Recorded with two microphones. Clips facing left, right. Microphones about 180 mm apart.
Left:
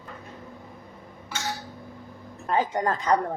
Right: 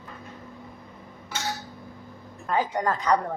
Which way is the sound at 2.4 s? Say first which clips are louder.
Left 1 dB; 30° left (ahead or behind).